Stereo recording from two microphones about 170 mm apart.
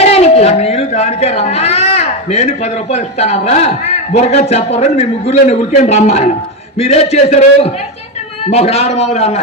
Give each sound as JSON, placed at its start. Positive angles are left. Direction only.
{"t": 0.0, "sound": "speech", "side_deg": 40}